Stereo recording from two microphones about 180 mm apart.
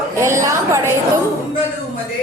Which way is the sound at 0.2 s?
15° right (ahead or behind).